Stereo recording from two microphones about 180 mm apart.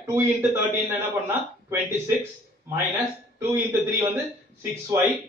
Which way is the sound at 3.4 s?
15° right (ahead or behind).